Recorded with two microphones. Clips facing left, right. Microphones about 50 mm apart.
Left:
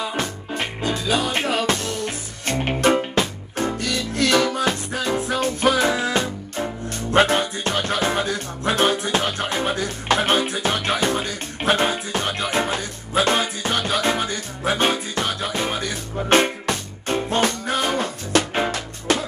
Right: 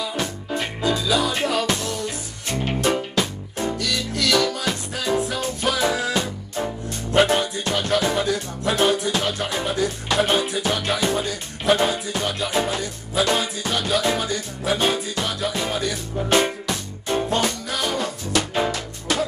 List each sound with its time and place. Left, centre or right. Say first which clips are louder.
0.0 s music: left 1 dB; left